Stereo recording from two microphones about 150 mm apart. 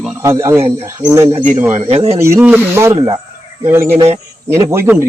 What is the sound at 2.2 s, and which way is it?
Speech, 15° right (ahead or behind).